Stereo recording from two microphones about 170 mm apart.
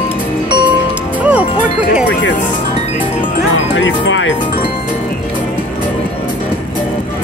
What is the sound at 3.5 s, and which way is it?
Music, 90° left.